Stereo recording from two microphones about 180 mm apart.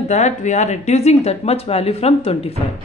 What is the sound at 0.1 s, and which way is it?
Speech, 40° left (ahead or behind).